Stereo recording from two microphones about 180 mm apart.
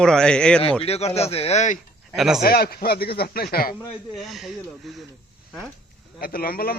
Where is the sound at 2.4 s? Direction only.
60° left (ahead or behind).